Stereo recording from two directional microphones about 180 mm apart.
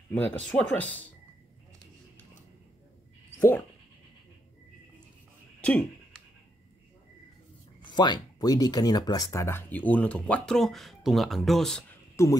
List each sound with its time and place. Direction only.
0.1 s speech: 10° left (ahead or behind)
3.3 s speech: 15° left (ahead or behind)
5.6 s a sound: 5° left (ahead or behind)
7.8 s speech: 25° left (ahead or behind); by 11.8 s centre (ahead or behind)
12.2 s speech: 15° left (ahead or behind)